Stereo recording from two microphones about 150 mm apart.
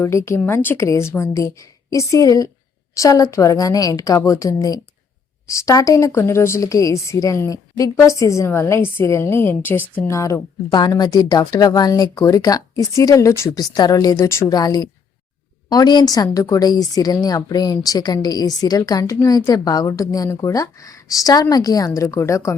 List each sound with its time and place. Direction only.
0.0 s a woman's voice: 20° left (ahead or behind)